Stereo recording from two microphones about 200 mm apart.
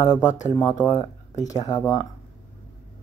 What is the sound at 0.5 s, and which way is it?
Speech, 20° left (ahead or behind).